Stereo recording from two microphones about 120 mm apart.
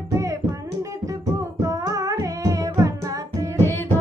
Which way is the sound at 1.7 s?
30° right (ahead or behind).